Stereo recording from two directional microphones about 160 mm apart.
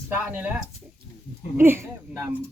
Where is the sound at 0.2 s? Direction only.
10° right (ahead or behind).